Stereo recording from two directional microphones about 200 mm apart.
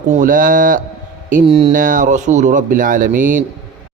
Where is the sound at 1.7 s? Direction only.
40° right (ahead or behind).